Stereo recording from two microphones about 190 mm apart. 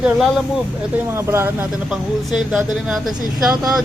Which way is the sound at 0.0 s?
Centre (ahead or behind).